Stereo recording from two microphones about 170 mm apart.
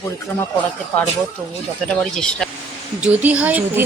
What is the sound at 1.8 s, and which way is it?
Speech, 5° left (ahead or behind).